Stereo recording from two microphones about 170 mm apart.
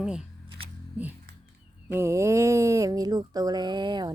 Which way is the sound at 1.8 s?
15° right (ahead or behind).